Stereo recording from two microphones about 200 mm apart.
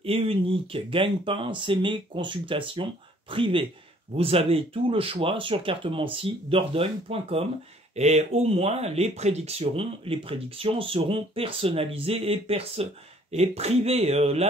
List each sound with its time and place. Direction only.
0.0 s speech: 30° right (ahead or behind)